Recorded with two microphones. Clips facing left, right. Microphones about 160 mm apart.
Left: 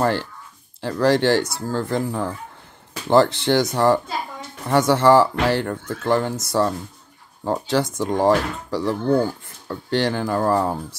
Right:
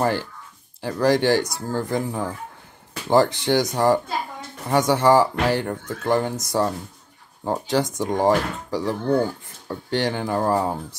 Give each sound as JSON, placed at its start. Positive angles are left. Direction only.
{"t": 0.7, "sound": "speech", "side_deg": -15}